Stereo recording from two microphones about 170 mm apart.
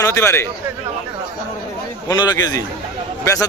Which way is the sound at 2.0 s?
25° left (ahead or behind).